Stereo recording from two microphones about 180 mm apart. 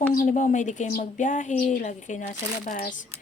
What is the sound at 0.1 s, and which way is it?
A woman's voice, 45° left (ahead or behind).